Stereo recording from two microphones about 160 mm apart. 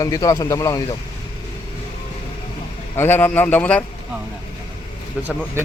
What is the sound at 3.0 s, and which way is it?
Speech, 10° left (ahead or behind).